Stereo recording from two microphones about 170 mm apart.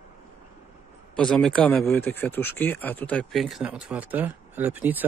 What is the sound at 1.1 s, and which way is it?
Speech, 5° left (ahead or behind).